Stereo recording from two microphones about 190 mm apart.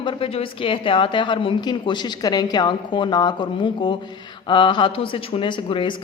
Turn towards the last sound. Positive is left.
turn(degrees=25)  # may be behind; listen again after turning